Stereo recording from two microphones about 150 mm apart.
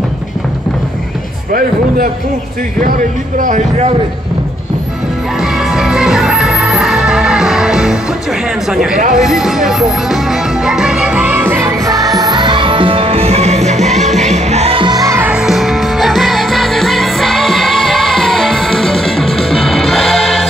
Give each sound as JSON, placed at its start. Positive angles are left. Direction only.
{"t": 3.3, "sound": "speech", "side_deg": -55}
{"t": 5.4, "sound": "music", "side_deg": 0}
{"t": 9.1, "sound": "music", "side_deg": 0}
{"t": 15.3, "sound": "music", "side_deg": 0}